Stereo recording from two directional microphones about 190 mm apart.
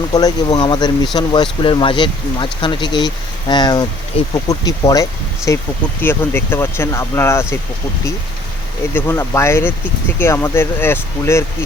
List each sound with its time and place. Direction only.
0.1 s speech: 20° left (ahead or behind)
8.9 s speech: 10° left (ahead or behind)